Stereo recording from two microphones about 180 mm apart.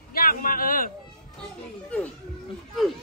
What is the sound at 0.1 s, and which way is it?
Speech, 55° left (ahead or behind).